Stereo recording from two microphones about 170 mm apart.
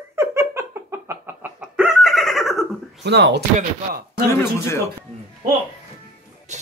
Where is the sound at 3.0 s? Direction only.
80° right.